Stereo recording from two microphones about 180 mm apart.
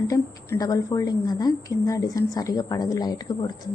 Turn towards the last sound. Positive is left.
turn(degrees=20)  # may be behind; listen again after turning